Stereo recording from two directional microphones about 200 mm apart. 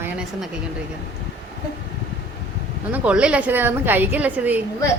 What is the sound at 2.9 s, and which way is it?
A woman's voice, 5° right (ahead or behind).